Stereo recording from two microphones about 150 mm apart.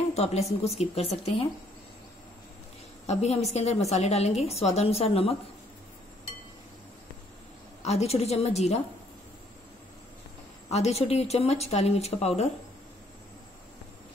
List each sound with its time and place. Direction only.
0.1 s speech: 45° left (ahead or behind)
3.1 s speech: 45° left (ahead or behind)
7.8 s speech: 45° left (ahead or behind)
10.7 s speech: 45° left (ahead or behind)